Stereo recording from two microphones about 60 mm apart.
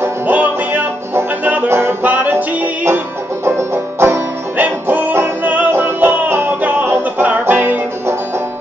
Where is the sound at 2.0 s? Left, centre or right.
Right.